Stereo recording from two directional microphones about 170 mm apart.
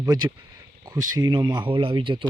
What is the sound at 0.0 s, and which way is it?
Speech, 20° right (ahead or behind).